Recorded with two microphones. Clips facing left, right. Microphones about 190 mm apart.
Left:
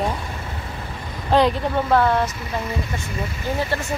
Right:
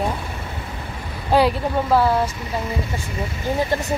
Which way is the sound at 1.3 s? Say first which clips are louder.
Even; 5° right (ahead or behind).